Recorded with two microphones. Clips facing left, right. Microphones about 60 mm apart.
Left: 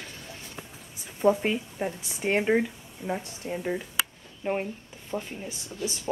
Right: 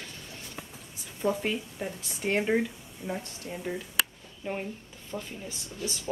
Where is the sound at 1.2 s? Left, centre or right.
Centre.